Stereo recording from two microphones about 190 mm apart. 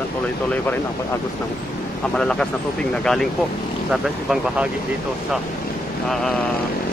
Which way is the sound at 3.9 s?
5° right (ahead or behind).